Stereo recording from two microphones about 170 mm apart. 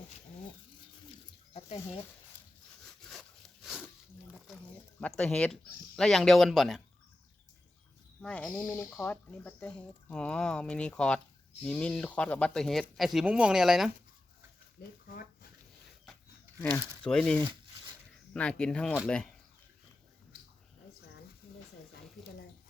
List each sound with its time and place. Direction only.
3.0 s wood: centre (ahead or behind)
4.9 s speech: 5° left (ahead or behind)
8.2 s speech: 5° left (ahead or behind)
14.8 s speech: 65° left (ahead or behind)
15.1 s a sound: 55° left (ahead or behind)
16.6 s speech: 10° left (ahead or behind)